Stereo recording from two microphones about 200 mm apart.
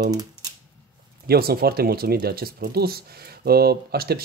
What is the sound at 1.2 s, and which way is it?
Speech, 50° right (ahead or behind).